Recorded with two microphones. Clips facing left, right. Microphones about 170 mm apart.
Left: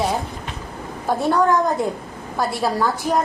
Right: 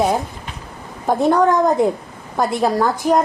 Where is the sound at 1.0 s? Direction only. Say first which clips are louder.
Right 4 dB; 20° right (ahead or behind).